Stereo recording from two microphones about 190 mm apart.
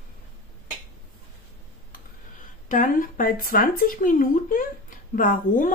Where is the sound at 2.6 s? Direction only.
45° left (ahead or behind).